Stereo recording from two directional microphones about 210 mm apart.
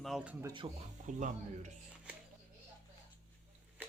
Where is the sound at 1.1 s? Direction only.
35° right (ahead or behind).